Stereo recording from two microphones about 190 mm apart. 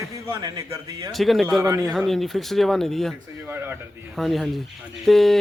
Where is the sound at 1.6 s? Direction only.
15° right (ahead or behind).